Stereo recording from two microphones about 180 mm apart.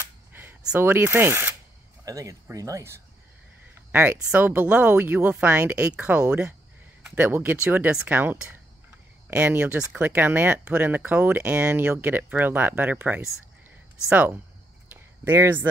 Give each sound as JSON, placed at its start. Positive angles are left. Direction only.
{"t": 0.3, "sound": "speech", "side_deg": -10}